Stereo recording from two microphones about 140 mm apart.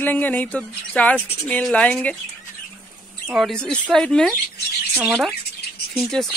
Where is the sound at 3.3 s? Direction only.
Centre (ahead or behind).